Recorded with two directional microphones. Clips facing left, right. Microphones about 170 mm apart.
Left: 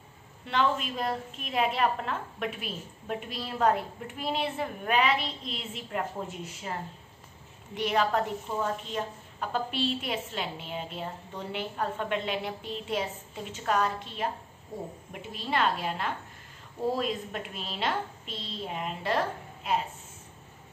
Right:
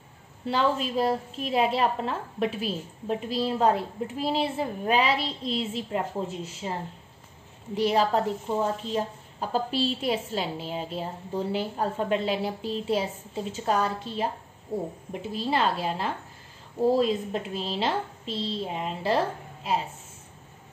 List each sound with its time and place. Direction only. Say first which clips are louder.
0.5 s a woman's voice: right 3 dB; 35° right (ahead or behind)